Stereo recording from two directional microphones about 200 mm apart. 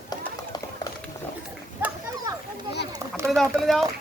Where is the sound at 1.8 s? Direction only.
10° right (ahead or behind).